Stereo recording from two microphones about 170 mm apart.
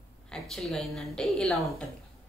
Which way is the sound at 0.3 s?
Centre (ahead or behind).